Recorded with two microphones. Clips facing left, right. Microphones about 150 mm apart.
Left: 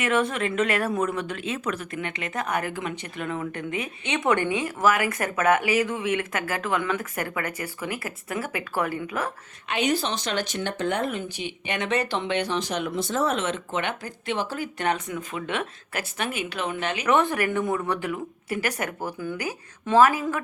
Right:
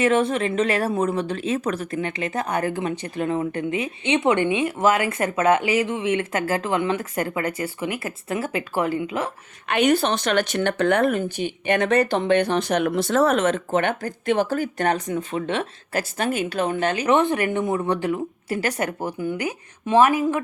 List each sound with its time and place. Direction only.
0.0 s speech: 30° right (ahead or behind)
9.6 s speech: 60° right (ahead or behind)
11.1 s speech: 45° right (ahead or behind); by 13.3 s 80° right
13.3 s speech: 50° right (ahead or behind)
17.1 s speech: 25° right (ahead or behind)